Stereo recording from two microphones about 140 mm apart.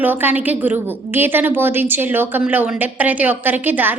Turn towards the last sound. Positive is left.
turn(degrees=-15)  # may be behind; listen again after turning